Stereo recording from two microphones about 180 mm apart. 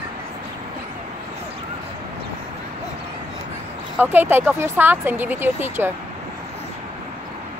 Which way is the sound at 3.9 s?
10° right (ahead or behind).